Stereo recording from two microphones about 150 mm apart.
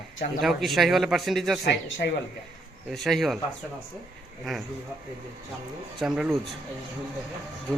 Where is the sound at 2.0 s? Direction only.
90° left.